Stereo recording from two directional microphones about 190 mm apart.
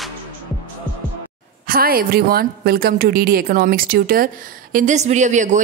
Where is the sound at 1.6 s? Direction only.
50° right (ahead or behind).